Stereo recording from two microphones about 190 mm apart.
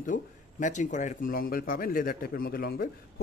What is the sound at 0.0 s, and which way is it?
Speech, 40° left (ahead or behind).